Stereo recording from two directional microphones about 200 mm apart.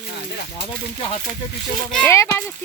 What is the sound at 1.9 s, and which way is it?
Speech, 10° left (ahead or behind).